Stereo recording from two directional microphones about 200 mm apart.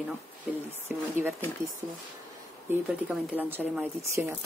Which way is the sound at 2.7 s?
10° right (ahead or behind).